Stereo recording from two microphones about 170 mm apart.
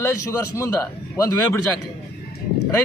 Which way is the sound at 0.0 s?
20° left (ahead or behind).